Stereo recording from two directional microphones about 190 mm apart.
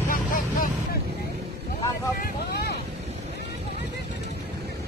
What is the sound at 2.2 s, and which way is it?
Boat, 55° left (ahead or behind).